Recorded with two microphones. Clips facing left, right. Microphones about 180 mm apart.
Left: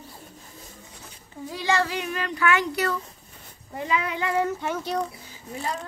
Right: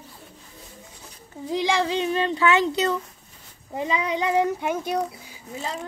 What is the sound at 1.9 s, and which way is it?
A woman's voice, 25° right (ahead or behind).